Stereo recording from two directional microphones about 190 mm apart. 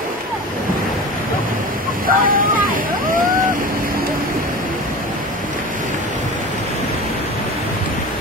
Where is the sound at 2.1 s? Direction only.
45° right (ahead or behind).